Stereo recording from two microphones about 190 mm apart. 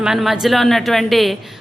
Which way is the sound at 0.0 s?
Centre (ahead or behind).